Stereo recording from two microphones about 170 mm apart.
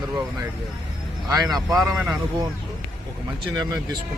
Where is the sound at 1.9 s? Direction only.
Centre (ahead or behind).